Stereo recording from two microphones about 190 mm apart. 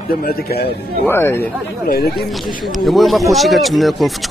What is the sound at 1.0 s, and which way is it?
Speech, 10° left (ahead or behind).